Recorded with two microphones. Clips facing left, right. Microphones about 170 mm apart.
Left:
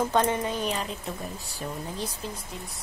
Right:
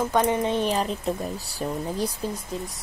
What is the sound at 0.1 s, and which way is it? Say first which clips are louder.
Speech: right 3 dB; 15° right (ahead or behind).